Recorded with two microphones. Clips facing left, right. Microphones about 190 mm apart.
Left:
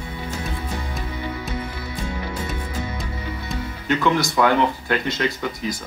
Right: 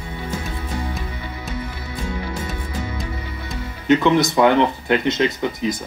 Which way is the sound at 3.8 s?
20° right (ahead or behind).